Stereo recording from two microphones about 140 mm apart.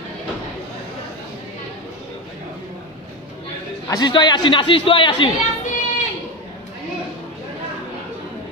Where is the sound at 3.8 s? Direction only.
30° left (ahead or behind).